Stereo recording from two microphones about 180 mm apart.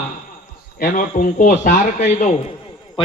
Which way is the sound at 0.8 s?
45° left (ahead or behind).